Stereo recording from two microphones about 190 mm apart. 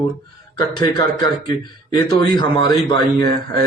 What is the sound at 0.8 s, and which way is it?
A man's voice, 20° left (ahead or behind).